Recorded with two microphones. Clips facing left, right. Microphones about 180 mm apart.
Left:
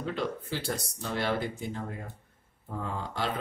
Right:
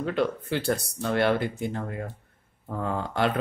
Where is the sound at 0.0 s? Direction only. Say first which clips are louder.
Right 6 dB; 65° right (ahead or behind).